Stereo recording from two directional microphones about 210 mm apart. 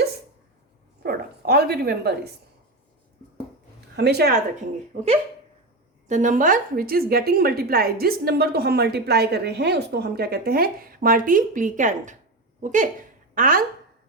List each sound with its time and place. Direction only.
1.0 s a woman's voice: 50° right (ahead or behind)
3.9 s a woman's voice: 50° right (ahead or behind)
6.1 s a woman's voice: 35° right (ahead or behind)